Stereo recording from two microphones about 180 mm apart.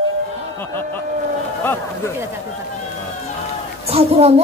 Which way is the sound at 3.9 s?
35° right (ahead or behind).